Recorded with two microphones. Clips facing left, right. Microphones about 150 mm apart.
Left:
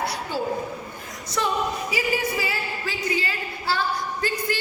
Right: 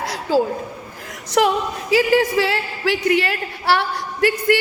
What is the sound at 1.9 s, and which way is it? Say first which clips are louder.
A woman's voice: right 14 dB; 90° right.